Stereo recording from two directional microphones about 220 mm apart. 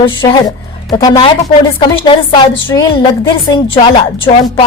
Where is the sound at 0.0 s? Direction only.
25° left (ahead or behind).